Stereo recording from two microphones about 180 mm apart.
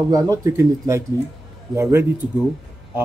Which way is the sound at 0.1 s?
20° right (ahead or behind).